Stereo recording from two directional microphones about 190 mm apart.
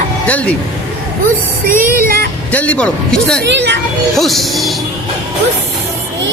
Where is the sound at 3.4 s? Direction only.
65° right (ahead or behind).